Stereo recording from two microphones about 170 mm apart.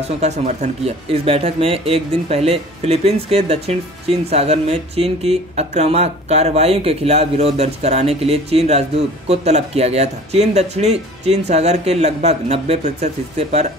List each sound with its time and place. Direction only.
0.0 s speech: 40° right (ahead or behind)